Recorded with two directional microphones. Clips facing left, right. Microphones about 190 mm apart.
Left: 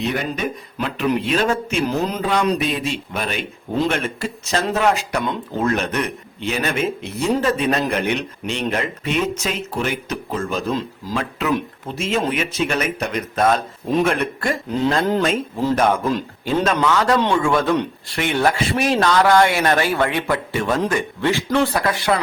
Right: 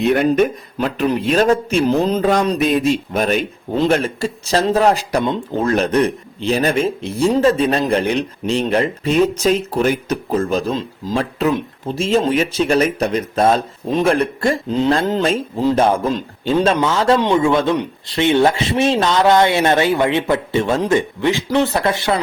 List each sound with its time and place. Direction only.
0.1 s speech: 55° right (ahead or behind); by 2.2 s 35° right (ahead or behind)
2.2 s speech: 45° right (ahead or behind); by 17.2 s 25° right (ahead or behind)
17.2 s speech: 15° right (ahead or behind)